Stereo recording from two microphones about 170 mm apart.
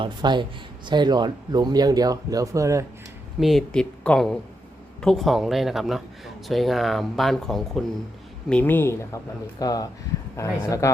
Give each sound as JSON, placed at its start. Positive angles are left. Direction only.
{"t": 0.0, "sound": "speech", "side_deg": -25}
{"t": 3.4, "sound": "speech", "side_deg": 0}